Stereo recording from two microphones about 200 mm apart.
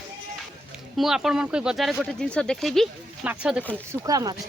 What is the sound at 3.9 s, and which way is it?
Speech, 15° right (ahead or behind).